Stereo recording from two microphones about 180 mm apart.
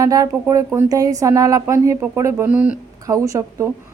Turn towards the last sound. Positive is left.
turn(degrees=-15)  # may be behind; listen again after turning